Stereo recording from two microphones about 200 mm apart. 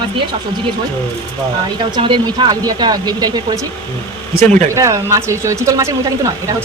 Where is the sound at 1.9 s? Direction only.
20° right (ahead or behind).